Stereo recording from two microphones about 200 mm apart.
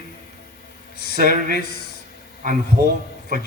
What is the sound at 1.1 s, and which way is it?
Speech, 45° right (ahead or behind).